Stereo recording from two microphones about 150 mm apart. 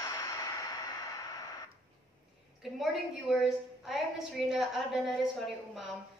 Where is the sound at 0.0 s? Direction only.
20° left (ahead or behind).